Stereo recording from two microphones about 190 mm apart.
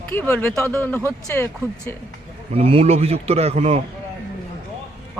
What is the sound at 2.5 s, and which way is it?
A man's voice, 30° right (ahead or behind).